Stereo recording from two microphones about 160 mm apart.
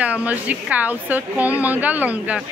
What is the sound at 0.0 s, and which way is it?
A woman's voice, 10° right (ahead or behind).